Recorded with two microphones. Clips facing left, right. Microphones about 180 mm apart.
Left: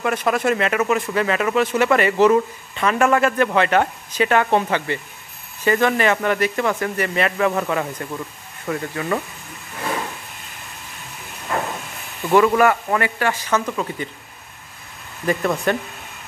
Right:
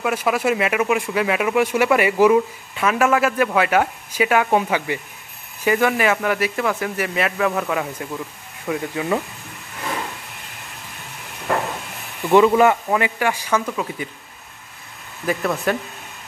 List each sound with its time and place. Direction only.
0.0 s speech: 5° right (ahead or behind)
11.5 s a sound: 60° right (ahead or behind)
12.3 s speech: 20° right (ahead or behind)
15.2 s speech: 5° right (ahead or behind)